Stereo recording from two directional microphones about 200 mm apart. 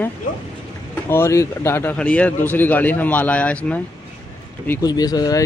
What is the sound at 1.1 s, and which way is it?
A man's voice, 15° left (ahead or behind).